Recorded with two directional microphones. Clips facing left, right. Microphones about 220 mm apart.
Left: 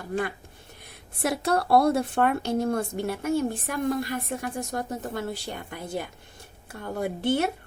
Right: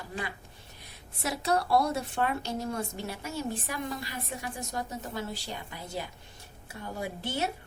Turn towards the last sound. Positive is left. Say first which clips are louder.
# left 8 dB
turn(degrees=55)  # may be behind; listen again after turning